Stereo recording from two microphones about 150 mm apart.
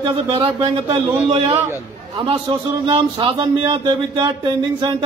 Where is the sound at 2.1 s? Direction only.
30° right (ahead or behind).